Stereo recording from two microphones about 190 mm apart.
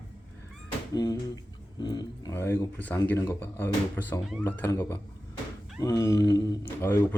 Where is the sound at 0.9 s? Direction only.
20° left (ahead or behind).